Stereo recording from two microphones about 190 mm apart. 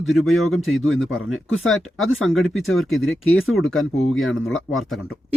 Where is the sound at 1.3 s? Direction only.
90° left.